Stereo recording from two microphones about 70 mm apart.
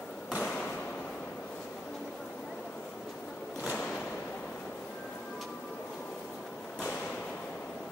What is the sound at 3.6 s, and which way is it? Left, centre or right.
Whip, centre.